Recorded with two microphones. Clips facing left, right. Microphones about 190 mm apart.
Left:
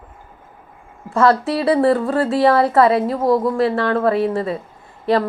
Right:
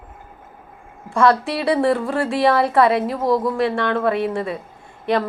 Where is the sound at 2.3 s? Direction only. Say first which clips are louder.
Left 2 dB; 25° left (ahead or behind).